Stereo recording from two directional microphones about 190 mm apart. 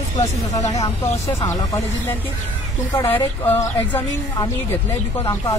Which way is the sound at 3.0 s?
10° left (ahead or behind).